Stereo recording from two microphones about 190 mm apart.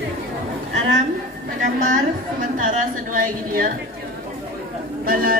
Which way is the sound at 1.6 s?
40° right (ahead or behind).